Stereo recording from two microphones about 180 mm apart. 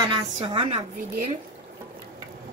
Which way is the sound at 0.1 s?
25° right (ahead or behind).